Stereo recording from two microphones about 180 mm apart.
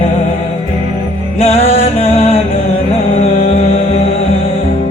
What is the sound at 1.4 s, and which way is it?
Music, 35° left (ahead or behind).